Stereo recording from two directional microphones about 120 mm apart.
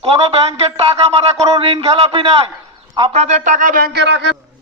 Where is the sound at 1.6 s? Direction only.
50° right (ahead or behind).